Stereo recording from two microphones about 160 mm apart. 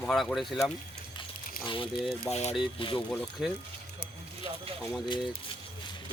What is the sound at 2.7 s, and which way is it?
Speech, 30° left (ahead or behind).